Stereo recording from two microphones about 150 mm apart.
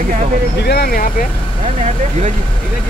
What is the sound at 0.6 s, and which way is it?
Speech, 90° left.